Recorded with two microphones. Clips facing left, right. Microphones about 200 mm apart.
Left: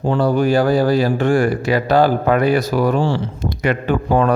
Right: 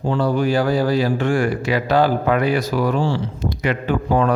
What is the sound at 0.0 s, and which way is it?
A man's voice, 55° left (ahead or behind).